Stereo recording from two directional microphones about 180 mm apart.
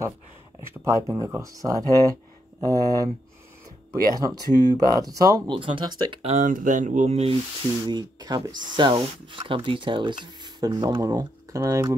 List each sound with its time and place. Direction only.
0.8 s speech: 15° right (ahead or behind)
4.1 s speech: 20° right (ahead or behind)
6.2 s speech: 45° right (ahead or behind)
7.8 s speech: 25° right (ahead or behind)